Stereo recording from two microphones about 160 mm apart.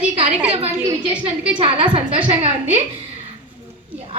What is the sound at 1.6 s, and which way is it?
Speech, 35° right (ahead or behind).